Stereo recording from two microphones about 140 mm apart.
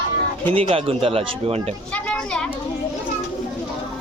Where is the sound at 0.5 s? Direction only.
45° right (ahead or behind).